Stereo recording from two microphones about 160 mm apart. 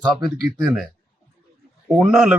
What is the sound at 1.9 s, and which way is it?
Speech, centre (ahead or behind).